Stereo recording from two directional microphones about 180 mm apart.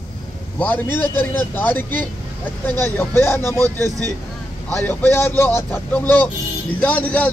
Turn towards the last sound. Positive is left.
turn(degrees=10)  # may be behind; listen again after turning